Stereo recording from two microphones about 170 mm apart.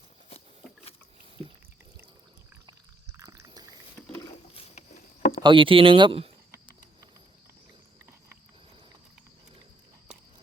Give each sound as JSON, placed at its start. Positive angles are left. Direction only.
{"t": 2.6, "sound": "a sound", "side_deg": -20}
{"t": 4.5, "sound": "patter", "side_deg": 40}
{"t": 5.4, "sound": "speech", "side_deg": -30}